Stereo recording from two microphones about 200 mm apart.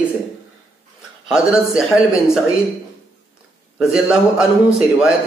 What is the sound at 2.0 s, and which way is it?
Speech, 15° left (ahead or behind).